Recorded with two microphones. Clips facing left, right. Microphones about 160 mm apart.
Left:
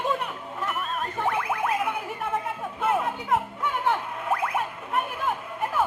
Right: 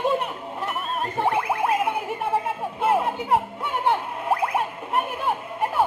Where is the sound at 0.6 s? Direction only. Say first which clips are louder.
Right 2 dB; 30° right (ahead or behind).